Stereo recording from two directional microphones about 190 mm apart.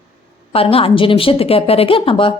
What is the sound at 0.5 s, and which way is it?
A woman's voice, 30° left (ahead or behind).